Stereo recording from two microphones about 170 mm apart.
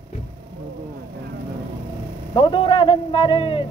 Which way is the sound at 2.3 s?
30° left (ahead or behind).